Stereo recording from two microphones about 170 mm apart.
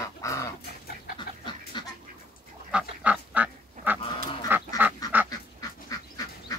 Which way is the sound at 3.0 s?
10° right (ahead or behind).